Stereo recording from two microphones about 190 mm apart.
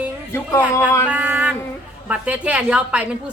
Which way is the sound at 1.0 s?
5° right (ahead or behind).